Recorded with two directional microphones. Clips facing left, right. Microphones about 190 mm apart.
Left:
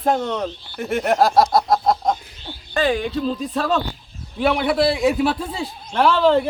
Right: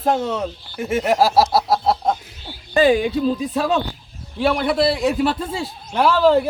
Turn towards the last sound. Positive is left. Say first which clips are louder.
# right 1 dB
turn(degrees=-5)  # may be behind; listen again after turning